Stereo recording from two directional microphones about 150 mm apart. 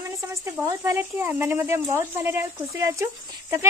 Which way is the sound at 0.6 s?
15° right (ahead or behind).